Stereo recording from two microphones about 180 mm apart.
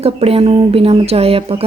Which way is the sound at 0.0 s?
35° right (ahead or behind).